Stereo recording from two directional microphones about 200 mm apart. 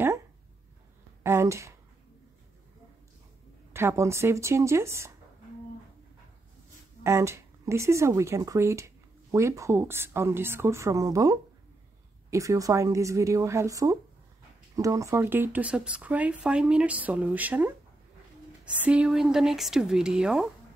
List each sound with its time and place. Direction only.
1.2 s a sound: 15° right (ahead or behind)
3.7 s speech: 15° right (ahead or behind)
7.0 s speech: 15° right (ahead or behind)
18.8 s speech: 5° right (ahead or behind)